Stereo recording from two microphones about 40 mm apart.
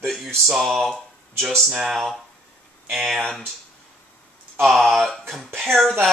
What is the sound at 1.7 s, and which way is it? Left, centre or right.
Speech, centre.